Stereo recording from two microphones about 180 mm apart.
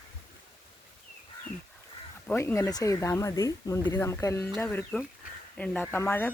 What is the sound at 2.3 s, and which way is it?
Speech, 15° left (ahead or behind).